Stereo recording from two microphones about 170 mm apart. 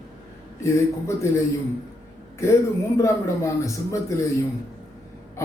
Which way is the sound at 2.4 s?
15° left (ahead or behind).